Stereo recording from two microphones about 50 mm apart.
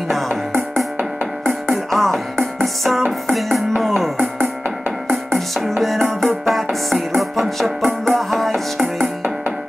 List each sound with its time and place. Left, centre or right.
0.3 s music: right
1.9 s music: centre
4.2 s music: right
5.1 s music: centre